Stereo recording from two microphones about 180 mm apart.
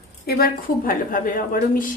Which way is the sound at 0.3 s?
55° left (ahead or behind).